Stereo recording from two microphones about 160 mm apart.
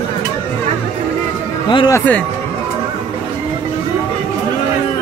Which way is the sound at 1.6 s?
30° left (ahead or behind).